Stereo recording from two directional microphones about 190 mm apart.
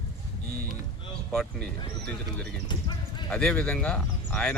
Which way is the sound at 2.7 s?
25° left (ahead or behind).